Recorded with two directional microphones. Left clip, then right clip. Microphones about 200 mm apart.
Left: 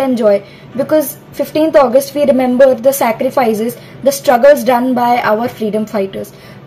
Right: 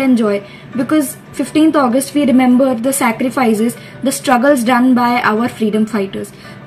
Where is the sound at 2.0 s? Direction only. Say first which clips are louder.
Left 5 dB; centre (ahead or behind).